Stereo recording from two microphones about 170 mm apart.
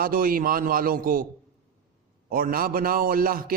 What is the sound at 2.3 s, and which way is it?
A man's voice, 60° right (ahead or behind).